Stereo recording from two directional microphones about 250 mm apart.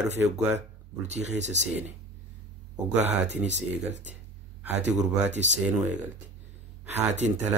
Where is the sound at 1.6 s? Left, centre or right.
Right.